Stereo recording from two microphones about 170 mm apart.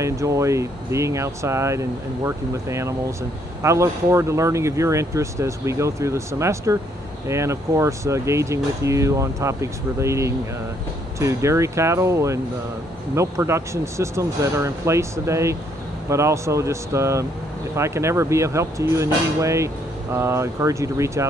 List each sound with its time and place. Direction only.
0.0 s speech: 20° right (ahead or behind)